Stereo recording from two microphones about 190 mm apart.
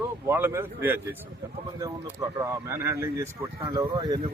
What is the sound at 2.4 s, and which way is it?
Speech, 15° right (ahead or behind).